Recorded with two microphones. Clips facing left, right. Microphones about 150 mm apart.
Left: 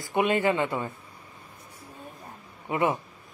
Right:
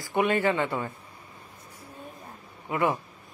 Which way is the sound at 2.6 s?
20° left (ahead or behind).